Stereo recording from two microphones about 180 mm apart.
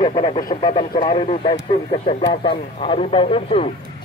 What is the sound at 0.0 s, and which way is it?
A man's voice, 30° left (ahead or behind).